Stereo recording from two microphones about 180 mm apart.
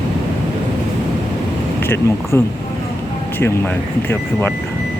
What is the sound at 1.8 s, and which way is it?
Speech, 15° left (ahead or behind).